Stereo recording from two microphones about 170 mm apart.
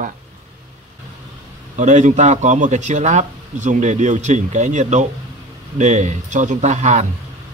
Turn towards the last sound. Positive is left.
turn(degrees=-45)  # may be behind; listen again after turning